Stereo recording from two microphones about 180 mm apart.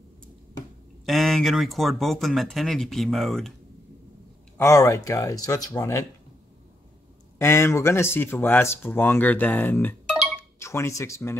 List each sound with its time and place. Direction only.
1.0 s speech: centre (ahead or behind)
4.6 s speech: 15° left (ahead or behind)
7.3 s speech: 15° left (ahead or behind)